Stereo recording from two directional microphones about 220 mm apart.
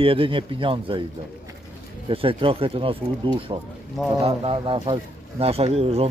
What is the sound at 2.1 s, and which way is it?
Speech, 25° right (ahead or behind).